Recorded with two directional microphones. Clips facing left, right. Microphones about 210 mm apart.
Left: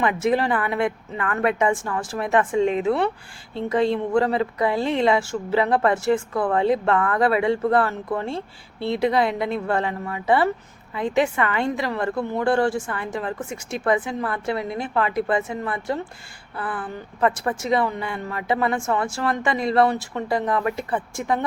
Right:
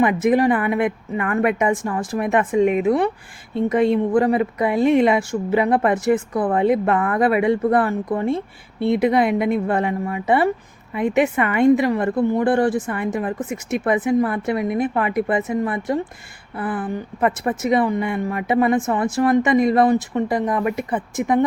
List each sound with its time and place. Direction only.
0.0 s a woman's voice: 20° right (ahead or behind)
13.5 s speech: 60° right (ahead or behind)
13.8 s speech: 20° right (ahead or behind)